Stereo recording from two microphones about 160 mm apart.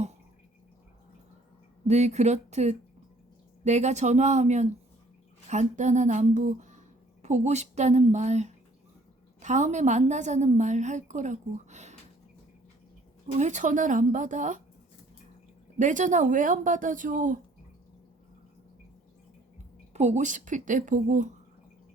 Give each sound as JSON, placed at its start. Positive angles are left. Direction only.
{"t": 1.9, "sound": "a woman's voice", "side_deg": -45}
{"t": 13.4, "sound": "a woman's voice", "side_deg": -50}
{"t": 15.8, "sound": "a woman's voice", "side_deg": -50}
{"t": 19.9, "sound": "a woman's voice", "side_deg": -45}